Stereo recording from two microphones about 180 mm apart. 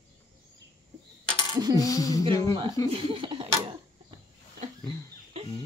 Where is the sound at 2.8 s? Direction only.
30° right (ahead or behind).